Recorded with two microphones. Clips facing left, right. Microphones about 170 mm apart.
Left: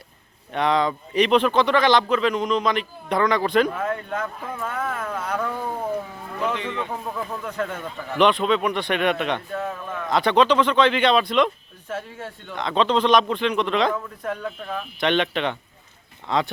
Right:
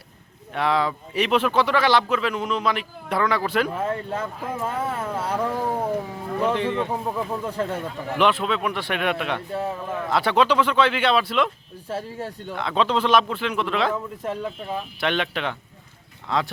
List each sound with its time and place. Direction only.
0.5 s speech: 5° right (ahead or behind)
3.8 s speech: 30° right (ahead or behind)
6.5 s a man's voice: 50° right (ahead or behind)
6.9 s speech: 20° right (ahead or behind)
7.4 s speech: 30° right (ahead or behind)
8.1 s a man's voice: 5° right (ahead or behind)
11.9 s speech: 35° right (ahead or behind)
12.5 s speech: 5° right (ahead or behind)
14.2 s speech: 25° right (ahead or behind)
15.0 s a man's voice: 5° right (ahead or behind)